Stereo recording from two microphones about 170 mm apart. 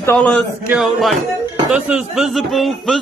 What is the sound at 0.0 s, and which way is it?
Speech, 15° left (ahead or behind).